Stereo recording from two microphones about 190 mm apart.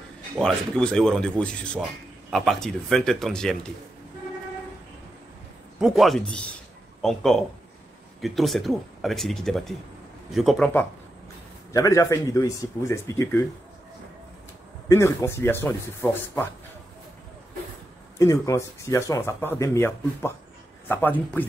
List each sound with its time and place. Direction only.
0.4 s speech: 5° left (ahead or behind)
5.8 s speech: centre (ahead or behind)
11.7 s speech: 15° left (ahead or behind)
14.9 s speech: 15° left (ahead or behind)
18.2 s speech: 15° left (ahead or behind)